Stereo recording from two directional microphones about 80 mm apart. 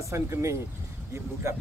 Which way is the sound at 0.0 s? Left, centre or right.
Right.